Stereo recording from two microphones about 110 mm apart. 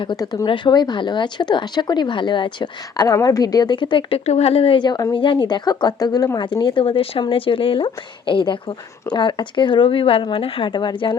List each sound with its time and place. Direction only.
0.2 s speech: 35° left (ahead or behind)
0.4 s speech: 45° left (ahead or behind)
4.3 s speech: 75° left (ahead or behind); by 11.2 s 45° left (ahead or behind)